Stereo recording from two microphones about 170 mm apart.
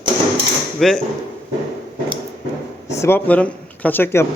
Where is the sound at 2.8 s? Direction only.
15° left (ahead or behind).